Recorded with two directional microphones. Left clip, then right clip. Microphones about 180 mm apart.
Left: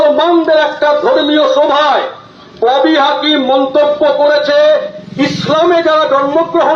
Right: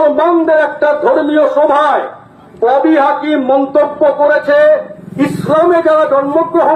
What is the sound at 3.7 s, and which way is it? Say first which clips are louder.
Speech: left 1 dB; 25° left (ahead or behind).